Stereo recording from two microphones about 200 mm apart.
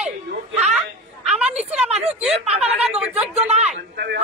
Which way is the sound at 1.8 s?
35° right (ahead or behind).